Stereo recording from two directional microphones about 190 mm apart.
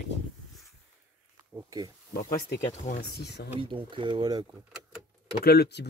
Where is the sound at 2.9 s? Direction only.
55° left (ahead or behind).